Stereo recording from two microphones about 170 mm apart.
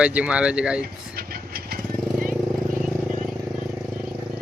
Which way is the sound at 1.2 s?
65° right (ahead or behind).